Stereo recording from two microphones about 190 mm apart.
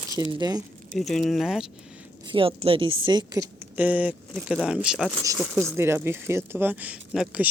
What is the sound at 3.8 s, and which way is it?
Speech, 10° right (ahead or behind).